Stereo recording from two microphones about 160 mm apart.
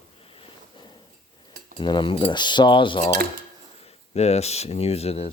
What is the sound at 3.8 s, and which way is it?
Speech, 40° left (ahead or behind).